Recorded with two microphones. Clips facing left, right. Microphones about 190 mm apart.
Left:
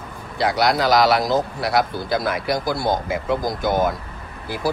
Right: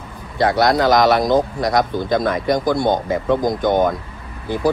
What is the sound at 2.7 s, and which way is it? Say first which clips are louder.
Speech: right 4 dB; 25° right (ahead or behind).